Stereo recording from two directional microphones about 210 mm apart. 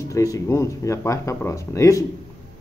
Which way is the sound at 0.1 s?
15° left (ahead or behind).